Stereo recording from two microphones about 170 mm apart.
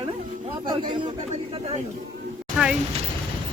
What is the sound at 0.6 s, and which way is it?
Speech, 30° right (ahead or behind).